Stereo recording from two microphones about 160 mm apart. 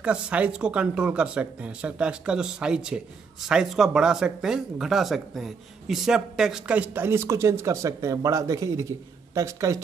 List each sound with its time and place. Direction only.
0.0 s speech: 5° right (ahead or behind)